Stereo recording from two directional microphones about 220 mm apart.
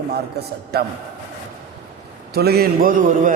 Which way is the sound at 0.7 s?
45° right (ahead or behind).